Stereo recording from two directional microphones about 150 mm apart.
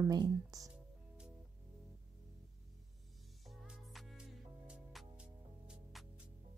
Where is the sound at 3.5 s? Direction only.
Centre (ahead or behind).